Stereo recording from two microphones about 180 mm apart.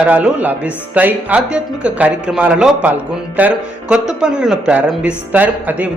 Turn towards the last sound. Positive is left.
turn(degrees=-10)  # may be behind; listen again after turning